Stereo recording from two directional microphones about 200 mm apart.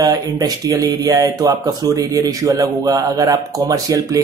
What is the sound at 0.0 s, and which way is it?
A man's voice, 20° right (ahead or behind).